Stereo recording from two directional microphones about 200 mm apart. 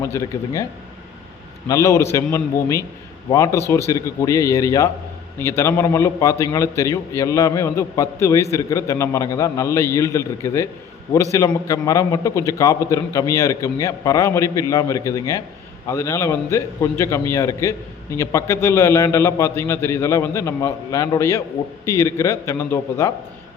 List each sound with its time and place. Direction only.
0.0 s a man's voice: 15° left (ahead or behind)
1.6 s a man's voice: 15° left (ahead or behind)